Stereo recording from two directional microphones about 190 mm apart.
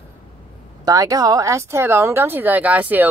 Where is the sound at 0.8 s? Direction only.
20° right (ahead or behind).